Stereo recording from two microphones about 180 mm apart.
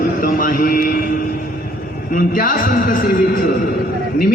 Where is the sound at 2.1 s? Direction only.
50° left (ahead or behind).